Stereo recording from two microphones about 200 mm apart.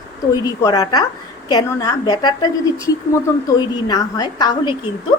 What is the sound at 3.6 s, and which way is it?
A woman's voice, 20° left (ahead or behind).